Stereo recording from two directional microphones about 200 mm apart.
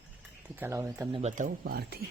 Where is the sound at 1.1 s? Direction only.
35° right (ahead or behind).